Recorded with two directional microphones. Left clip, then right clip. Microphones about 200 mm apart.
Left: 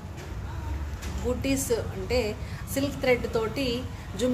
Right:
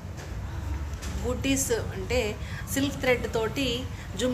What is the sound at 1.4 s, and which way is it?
A woman's voice, 5° left (ahead or behind).